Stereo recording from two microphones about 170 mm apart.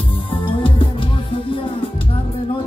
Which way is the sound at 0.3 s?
30° left (ahead or behind).